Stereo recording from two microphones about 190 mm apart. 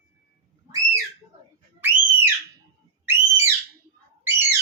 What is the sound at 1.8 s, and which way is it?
Whistle, 10° right (ahead or behind).